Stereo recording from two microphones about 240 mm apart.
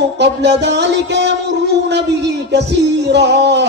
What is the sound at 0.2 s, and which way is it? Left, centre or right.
A man's voice, right.